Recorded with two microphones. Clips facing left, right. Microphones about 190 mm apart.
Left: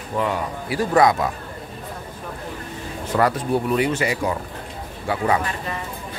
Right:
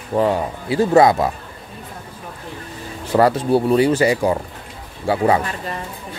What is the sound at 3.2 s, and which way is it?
Speech, 30° right (ahead or behind).